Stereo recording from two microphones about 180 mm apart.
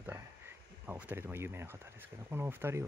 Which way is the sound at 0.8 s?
10° right (ahead or behind).